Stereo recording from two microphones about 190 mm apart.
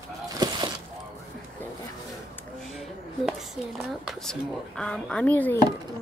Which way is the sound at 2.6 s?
Centre (ahead or behind).